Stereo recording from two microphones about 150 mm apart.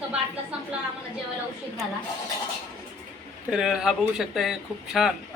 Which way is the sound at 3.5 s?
5° right (ahead or behind).